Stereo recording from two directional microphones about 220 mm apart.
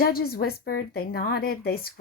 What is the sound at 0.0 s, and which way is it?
A woman's voice, 45° left (ahead or behind).